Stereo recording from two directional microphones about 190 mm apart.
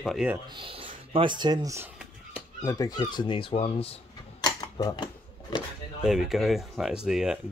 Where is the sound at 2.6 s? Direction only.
20° left (ahead or behind).